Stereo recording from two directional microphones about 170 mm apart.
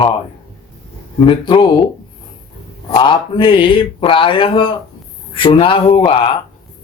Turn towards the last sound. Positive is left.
turn(degrees=30)  # may be behind; listen again after turning